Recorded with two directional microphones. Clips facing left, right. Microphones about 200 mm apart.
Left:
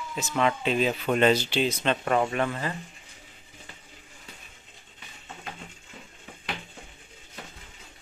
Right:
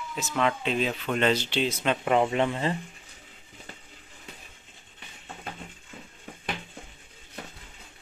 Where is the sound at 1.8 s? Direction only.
10° right (ahead or behind).